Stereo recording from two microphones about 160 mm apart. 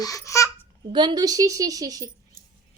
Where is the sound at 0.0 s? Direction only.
20° left (ahead or behind).